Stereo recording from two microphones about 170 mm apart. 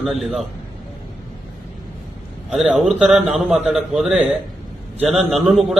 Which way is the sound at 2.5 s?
Centre (ahead or behind).